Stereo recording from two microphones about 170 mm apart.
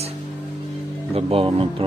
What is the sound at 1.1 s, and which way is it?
Speech, 35° right (ahead or behind).